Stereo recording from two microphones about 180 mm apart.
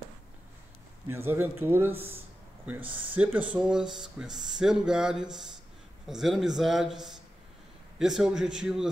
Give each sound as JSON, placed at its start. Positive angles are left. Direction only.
{"t": 1.1, "sound": "speech", "side_deg": -15}